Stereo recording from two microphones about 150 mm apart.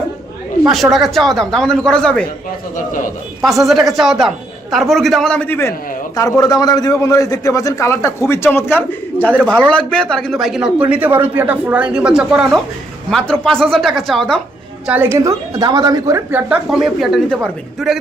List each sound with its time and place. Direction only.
0.7 s speech: centre (ahead or behind)
3.7 s a man's voice: centre (ahead or behind)
14.8 s a woman's voice: 15° right (ahead or behind)
16.5 s speech: 5° right (ahead or behind)